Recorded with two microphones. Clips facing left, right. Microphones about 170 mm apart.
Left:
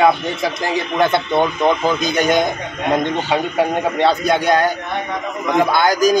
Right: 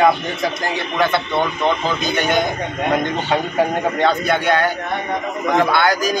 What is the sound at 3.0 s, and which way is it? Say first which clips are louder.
A man's voice: left 1 dB; 5° left (ahead or behind).